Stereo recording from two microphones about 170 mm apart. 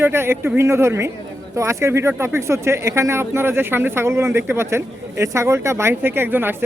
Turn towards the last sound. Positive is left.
turn(degrees=-10)  # may be behind; listen again after turning